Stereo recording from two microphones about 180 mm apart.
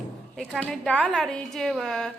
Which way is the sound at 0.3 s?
Centre (ahead or behind).